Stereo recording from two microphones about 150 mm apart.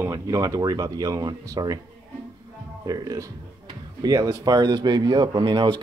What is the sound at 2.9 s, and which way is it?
Speech, 25° right (ahead or behind).